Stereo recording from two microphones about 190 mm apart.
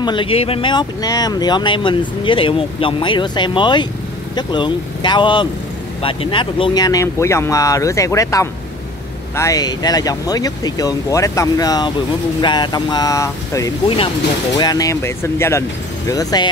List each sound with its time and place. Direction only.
0.0 s speech: 25° left (ahead or behind)